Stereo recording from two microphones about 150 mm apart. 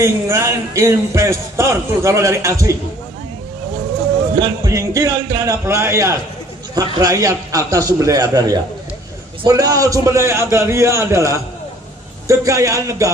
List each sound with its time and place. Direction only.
0.0 s a man's voice: 20° right (ahead or behind)
4.4 s a man's voice: 20° right (ahead or behind)